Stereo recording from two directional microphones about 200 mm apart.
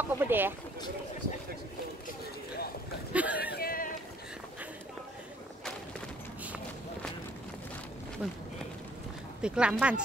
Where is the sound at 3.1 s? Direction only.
5° right (ahead or behind).